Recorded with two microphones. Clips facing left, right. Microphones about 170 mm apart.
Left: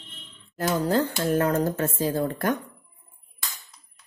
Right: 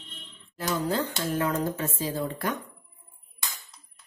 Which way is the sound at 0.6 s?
50° left (ahead or behind).